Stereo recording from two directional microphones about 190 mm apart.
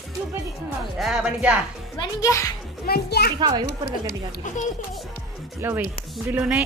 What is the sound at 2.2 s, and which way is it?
Speech, 15° left (ahead or behind).